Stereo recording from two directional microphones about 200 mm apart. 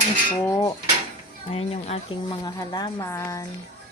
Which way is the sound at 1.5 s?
30° left (ahead or behind).